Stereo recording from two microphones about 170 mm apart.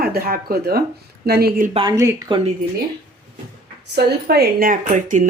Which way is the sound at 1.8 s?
20° right (ahead or behind).